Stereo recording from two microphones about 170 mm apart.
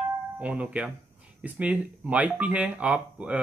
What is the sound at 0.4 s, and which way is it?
Speech, 5° right (ahead or behind).